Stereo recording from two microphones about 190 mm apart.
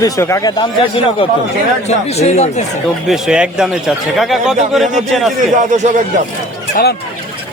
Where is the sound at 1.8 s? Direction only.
35° left (ahead or behind).